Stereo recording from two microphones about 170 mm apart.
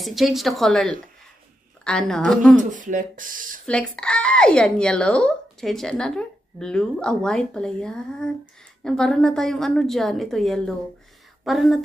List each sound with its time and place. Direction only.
0.0 s speech: centre (ahead or behind)
2.5 s speech: 50° right (ahead or behind)
3.6 s speech: 5° left (ahead or behind)